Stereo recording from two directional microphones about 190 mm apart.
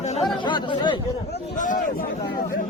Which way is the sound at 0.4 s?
25° left (ahead or behind).